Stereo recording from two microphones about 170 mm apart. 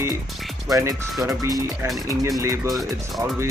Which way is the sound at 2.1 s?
15° right (ahead or behind).